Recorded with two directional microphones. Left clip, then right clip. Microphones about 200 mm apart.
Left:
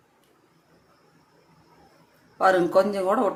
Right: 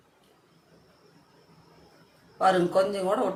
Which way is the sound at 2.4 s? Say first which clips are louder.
Left 3 dB; 45° left (ahead or behind).